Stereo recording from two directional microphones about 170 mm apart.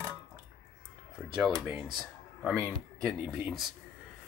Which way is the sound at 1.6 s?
5° right (ahead or behind).